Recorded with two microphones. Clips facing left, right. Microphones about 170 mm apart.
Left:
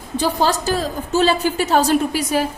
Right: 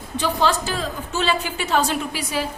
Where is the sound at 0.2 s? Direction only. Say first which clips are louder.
Left 2 dB; 40° left (ahead or behind).